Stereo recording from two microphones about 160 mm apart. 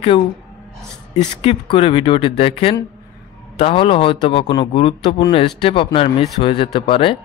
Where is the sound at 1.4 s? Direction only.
35° left (ahead or behind).